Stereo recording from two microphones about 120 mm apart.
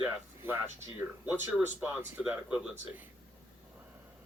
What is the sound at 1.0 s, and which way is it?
Speech, 15° right (ahead or behind).